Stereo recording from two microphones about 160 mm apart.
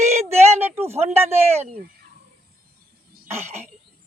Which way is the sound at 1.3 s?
40° right (ahead or behind).